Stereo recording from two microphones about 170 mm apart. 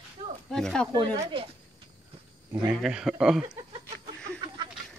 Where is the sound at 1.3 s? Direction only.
30° right (ahead or behind).